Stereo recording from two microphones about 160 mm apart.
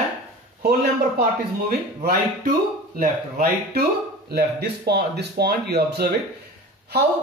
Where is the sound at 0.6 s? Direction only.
75° right (ahead or behind).